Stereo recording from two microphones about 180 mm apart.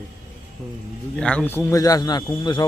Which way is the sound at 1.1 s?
5° left (ahead or behind).